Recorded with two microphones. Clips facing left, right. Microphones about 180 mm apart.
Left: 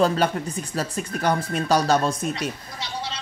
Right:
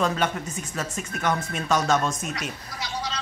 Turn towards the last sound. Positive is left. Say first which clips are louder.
# even
turn(degrees=25)  # may be behind; listen again after turning